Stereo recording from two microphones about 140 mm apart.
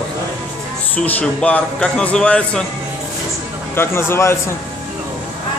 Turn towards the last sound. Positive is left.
turn(degrees=20)  # may be behind; listen again after turning